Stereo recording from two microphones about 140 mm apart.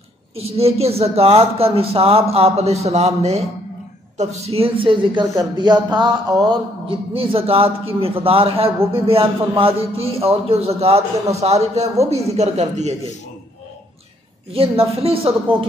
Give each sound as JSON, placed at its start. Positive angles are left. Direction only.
{"t": 0.4, "sound": "a man's voice", "side_deg": -45}
{"t": 14.5, "sound": "a man's voice", "side_deg": -45}